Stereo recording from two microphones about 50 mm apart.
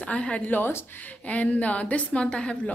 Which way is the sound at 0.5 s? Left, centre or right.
Left.